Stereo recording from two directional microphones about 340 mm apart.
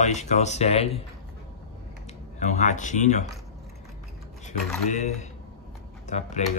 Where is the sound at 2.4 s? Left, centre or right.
Left.